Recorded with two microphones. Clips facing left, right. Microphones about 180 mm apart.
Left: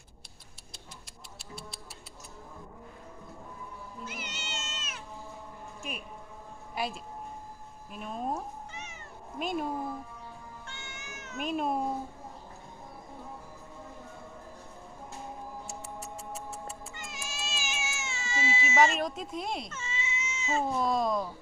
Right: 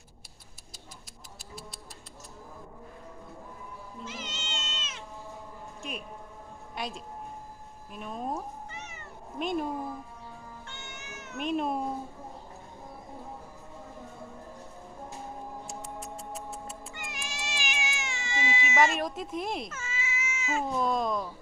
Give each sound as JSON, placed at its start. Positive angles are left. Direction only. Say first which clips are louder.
{"t": 1.4, "sound": "music", "louder": "even", "side_deg": 0}
{"t": 4.0, "sound": "cat", "louder": "right 2 dB", "side_deg": -90}
{"t": 6.7, "sound": "speech", "louder": "left 2 dB", "side_deg": 5}
{"t": 8.7, "sound": "cat", "louder": "right 1 dB", "side_deg": -65}
{"t": 9.4, "sound": "speech", "louder": "right 2 dB", "side_deg": 5}
{"t": 10.7, "sound": "cat", "louder": "right 1 dB", "side_deg": -65}
{"t": 11.3, "sound": "speech", "louder": "right 1 dB", "side_deg": 0}
{"t": 15.8, "sound": "music", "louder": "right 2 dB", "side_deg": 5}
{"t": 16.9, "sound": "cat", "louder": "right 2 dB", "side_deg": -15}
{"t": 18.0, "sound": "baby cry", "louder": "left 2 dB", "side_deg": -15}
{"t": 18.9, "sound": "speech", "louder": "right 1 dB", "side_deg": 0}
{"t": 20.7, "sound": "speech", "louder": "right 1 dB", "side_deg": 5}